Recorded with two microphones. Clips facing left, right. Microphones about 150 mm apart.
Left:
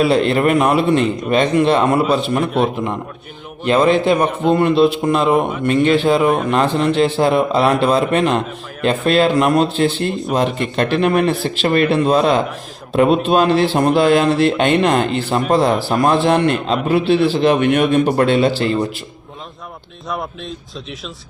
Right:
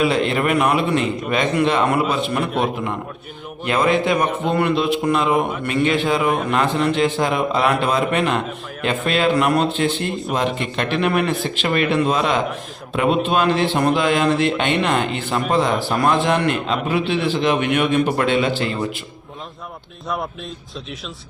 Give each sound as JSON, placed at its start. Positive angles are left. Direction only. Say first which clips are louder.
{"t": 0.0, "sound": "a man's voice", "louder": "left 4 dB", "side_deg": 35}
{"t": 3.6, "sound": "a man's voice", "louder": "left 4 dB", "side_deg": 30}